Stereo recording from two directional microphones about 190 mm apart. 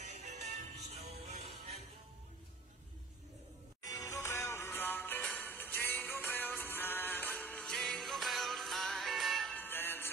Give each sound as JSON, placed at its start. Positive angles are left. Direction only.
{"t": 0.0, "sound": "music", "side_deg": -35}
{"t": 3.8, "sound": "music", "side_deg": 15}